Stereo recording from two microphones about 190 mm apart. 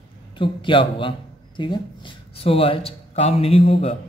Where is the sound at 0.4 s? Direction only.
25° left (ahead or behind).